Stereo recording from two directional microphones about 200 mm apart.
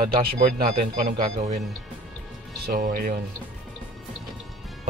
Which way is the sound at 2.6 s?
50° right (ahead or behind).